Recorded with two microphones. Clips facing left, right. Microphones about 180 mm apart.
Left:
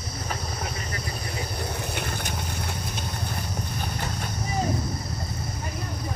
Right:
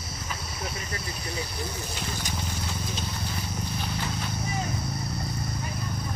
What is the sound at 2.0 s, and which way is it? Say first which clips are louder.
Vehicle: left 3 dB; 60° left (ahead or behind).